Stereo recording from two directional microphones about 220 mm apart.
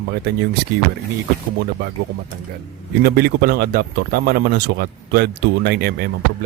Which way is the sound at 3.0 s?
45° right (ahead or behind).